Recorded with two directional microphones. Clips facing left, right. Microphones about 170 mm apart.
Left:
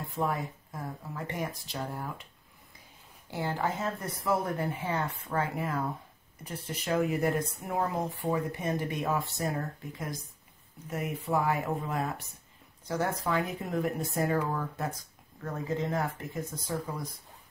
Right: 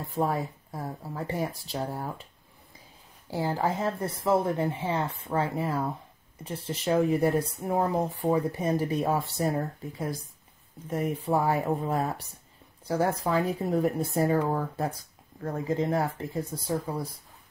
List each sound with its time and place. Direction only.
0.1 s speech: 35° right (ahead or behind)
3.3 s speech: 35° right (ahead or behind)
10.9 s speech: 30° right (ahead or behind)